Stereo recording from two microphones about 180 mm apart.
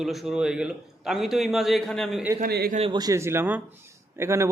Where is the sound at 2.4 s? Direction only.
55° right (ahead or behind).